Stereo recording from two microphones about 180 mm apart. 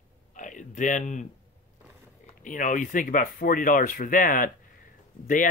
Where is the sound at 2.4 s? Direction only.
45° left (ahead or behind).